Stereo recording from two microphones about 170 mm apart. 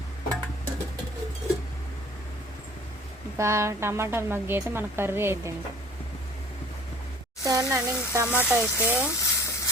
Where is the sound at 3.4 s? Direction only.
15° right (ahead or behind).